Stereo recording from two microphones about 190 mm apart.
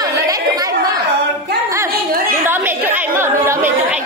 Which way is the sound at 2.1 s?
50° right (ahead or behind).